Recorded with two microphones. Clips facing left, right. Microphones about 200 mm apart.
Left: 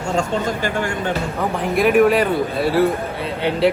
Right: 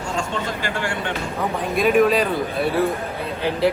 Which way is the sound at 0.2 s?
40° left (ahead or behind).